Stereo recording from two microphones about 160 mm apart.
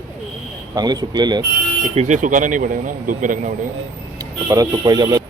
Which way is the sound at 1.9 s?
45° right (ahead or behind).